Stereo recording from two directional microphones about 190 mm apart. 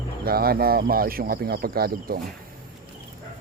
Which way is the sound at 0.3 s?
55° right (ahead or behind).